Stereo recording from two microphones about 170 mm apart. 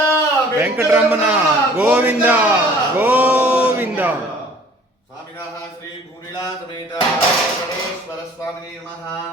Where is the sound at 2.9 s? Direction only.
10° right (ahead or behind).